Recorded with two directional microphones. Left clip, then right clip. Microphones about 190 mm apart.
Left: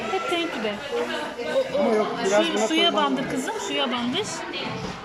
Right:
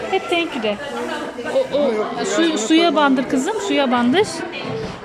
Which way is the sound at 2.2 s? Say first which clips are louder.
Right 4 dB; 20° right (ahead or behind).